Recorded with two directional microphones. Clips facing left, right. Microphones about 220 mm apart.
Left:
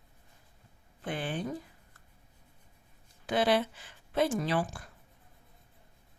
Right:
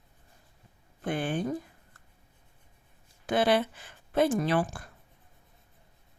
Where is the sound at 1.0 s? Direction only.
50° right (ahead or behind).